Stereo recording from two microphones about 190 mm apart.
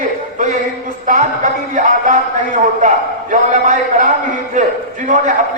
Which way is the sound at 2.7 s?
40° right (ahead or behind).